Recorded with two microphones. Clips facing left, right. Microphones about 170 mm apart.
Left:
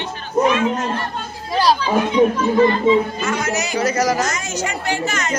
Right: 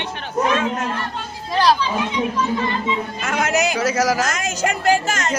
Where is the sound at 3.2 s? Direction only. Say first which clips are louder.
Left 1 dB; 55° right (ahead or behind).